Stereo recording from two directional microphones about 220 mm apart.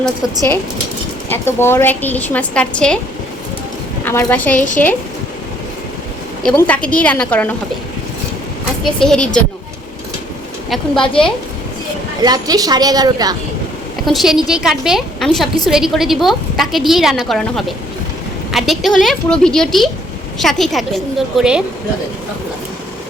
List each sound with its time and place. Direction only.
1.3 s a woman's voice: 10° left (ahead or behind)
4.0 s a woman's voice: 10° left (ahead or behind)
6.4 s a woman's voice: 5° left (ahead or behind)
8.8 s a woman's voice: 5° left (ahead or behind)
10.7 s a woman's voice: centre (ahead or behind)
12.2 s a woman's voice: 15° right (ahead or behind)
14.1 s a woman's voice: centre (ahead or behind)